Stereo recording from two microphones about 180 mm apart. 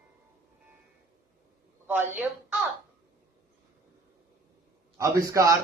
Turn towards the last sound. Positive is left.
turn(degrees=-15)  # may be behind; listen again after turning